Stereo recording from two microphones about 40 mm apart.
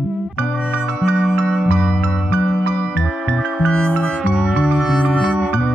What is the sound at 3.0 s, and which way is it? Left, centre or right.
Music, left.